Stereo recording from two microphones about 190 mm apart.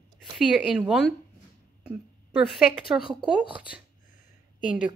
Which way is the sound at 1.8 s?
5° right (ahead or behind).